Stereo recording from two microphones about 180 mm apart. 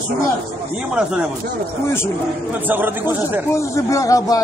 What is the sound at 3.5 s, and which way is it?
Speech, 15° left (ahead or behind).